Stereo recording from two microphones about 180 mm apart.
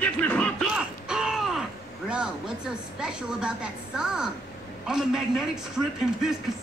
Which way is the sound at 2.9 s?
5° right (ahead or behind).